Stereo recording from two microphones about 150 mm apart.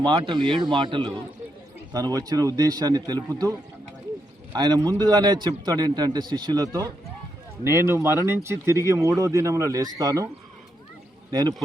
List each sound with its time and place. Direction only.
0.0 s speech: 30° right (ahead or behind)
4.5 s speech: 30° right (ahead or behind)
11.3 s speech: 25° right (ahead or behind)